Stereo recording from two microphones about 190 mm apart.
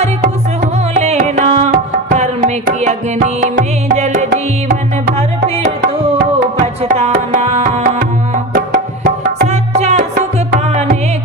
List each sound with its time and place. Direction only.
1.0 s music: 35° right (ahead or behind)
7.0 s tabla: 35° right (ahead or behind)
9.5 s tabla: 35° right (ahead or behind)